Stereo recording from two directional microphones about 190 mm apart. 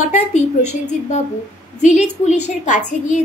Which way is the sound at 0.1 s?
35° left (ahead or behind).